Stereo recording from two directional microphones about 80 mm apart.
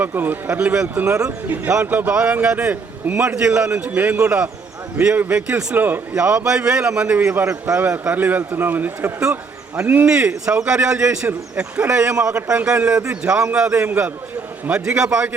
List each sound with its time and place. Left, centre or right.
0.0 s a man's voice: right
13.8 s a man's voice: right
14.7 s a man's voice: centre